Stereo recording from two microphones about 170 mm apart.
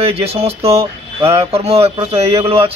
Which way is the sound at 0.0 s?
35° right (ahead or behind).